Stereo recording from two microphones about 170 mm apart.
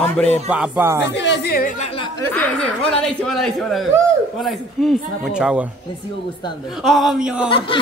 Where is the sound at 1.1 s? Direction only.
90° left; by 1.8 s 55° left (ahead or behind).